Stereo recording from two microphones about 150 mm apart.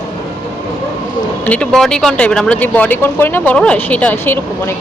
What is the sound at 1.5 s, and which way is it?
Speech, 5° left (ahead or behind).